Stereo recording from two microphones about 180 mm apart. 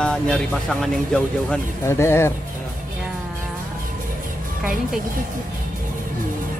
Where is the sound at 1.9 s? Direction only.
15° left (ahead or behind).